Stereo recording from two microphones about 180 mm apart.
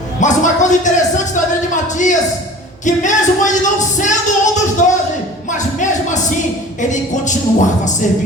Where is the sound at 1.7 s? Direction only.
45° left (ahead or behind).